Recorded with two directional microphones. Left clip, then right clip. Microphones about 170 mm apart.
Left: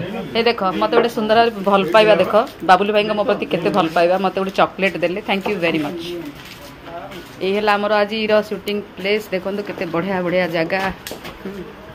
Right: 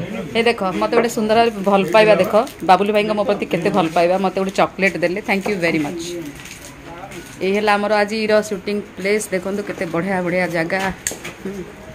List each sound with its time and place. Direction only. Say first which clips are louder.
0.3 s speech: even; 15° right (ahead or behind)
7.3 s speech: even; 20° right (ahead or behind)